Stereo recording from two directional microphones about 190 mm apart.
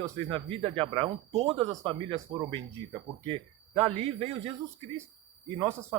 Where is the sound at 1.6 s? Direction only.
20° right (ahead or behind).